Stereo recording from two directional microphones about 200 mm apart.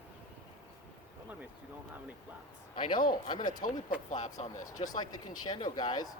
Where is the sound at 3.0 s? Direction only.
45° left (ahead or behind).